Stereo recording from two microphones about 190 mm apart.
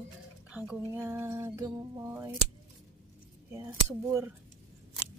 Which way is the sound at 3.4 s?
15° right (ahead or behind).